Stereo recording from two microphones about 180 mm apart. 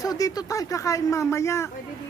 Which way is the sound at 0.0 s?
20° left (ahead or behind).